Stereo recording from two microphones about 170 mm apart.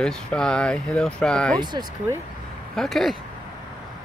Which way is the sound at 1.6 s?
25° right (ahead or behind).